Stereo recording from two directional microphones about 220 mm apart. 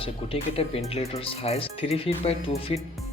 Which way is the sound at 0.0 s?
25° left (ahead or behind).